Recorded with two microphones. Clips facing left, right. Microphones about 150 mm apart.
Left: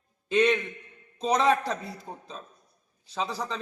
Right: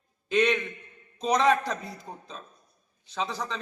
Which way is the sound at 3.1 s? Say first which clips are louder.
Even; 5° left (ahead or behind).